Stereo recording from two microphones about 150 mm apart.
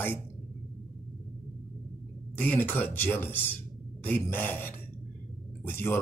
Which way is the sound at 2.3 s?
10° left (ahead or behind).